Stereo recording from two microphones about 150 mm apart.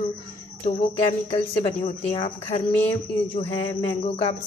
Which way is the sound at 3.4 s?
15° left (ahead or behind).